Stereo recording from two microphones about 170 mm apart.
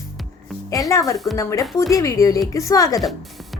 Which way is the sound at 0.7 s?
20° left (ahead or behind).